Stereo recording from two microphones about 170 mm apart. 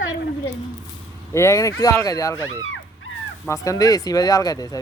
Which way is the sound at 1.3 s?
15° left (ahead or behind).